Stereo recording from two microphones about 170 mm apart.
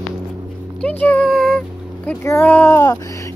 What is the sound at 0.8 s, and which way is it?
Speech, 10° left (ahead or behind).